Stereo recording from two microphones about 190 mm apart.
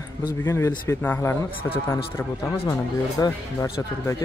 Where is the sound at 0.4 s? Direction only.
15° left (ahead or behind).